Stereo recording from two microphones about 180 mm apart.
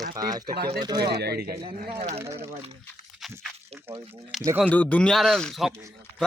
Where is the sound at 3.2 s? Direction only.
Centre (ahead or behind).